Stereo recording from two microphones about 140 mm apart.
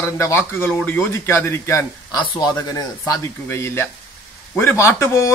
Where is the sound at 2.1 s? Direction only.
30° left (ahead or behind).